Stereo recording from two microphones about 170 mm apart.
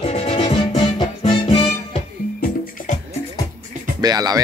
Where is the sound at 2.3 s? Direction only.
50° left (ahead or behind).